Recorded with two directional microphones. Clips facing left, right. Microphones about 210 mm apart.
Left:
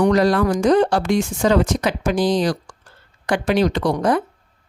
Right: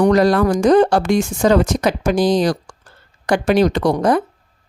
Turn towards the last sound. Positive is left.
turn(degrees=-40)  # may be behind; listen again after turning